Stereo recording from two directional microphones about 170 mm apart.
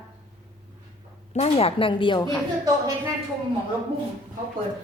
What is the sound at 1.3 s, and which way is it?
Speech, 35° left (ahead or behind).